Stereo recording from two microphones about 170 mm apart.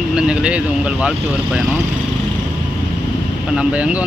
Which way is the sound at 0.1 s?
5° right (ahead or behind).